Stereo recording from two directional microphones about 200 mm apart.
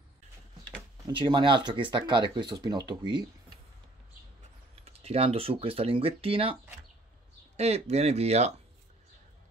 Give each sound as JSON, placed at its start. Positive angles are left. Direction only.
{"t": 1.0, "sound": "speech", "side_deg": -25}
{"t": 4.8, "sound": "speech", "side_deg": -30}